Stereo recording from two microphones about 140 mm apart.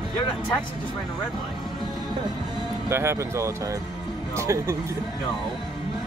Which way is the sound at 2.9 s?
20° right (ahead or behind).